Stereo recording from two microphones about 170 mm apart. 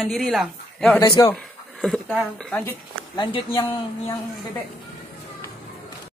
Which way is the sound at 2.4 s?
5° left (ahead or behind).